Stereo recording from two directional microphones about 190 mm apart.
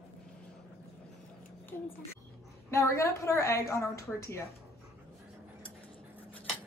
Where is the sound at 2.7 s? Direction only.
15° left (ahead or behind).